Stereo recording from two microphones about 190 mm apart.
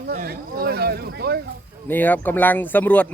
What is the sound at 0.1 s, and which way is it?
Speech, 50° right (ahead or behind).